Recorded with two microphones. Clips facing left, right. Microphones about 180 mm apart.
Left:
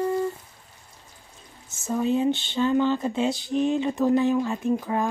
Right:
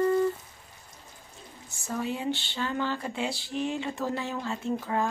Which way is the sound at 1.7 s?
20° left (ahead or behind).